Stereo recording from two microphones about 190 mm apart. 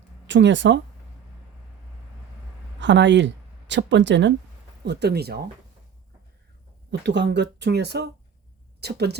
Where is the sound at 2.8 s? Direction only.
70° right (ahead or behind).